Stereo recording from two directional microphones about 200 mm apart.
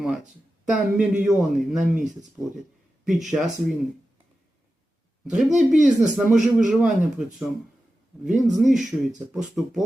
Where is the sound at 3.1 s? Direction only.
Centre (ahead or behind).